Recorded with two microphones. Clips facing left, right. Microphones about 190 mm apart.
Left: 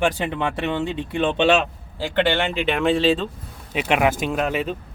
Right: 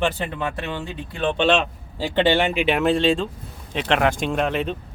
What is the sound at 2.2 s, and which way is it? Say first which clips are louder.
Speech: right 2 dB; 15° right (ahead or behind).